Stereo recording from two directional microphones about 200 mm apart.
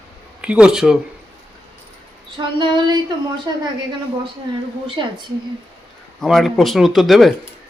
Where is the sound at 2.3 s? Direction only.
20° right (ahead or behind).